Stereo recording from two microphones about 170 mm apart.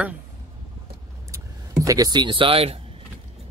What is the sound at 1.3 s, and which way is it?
Speech, 20° right (ahead or behind).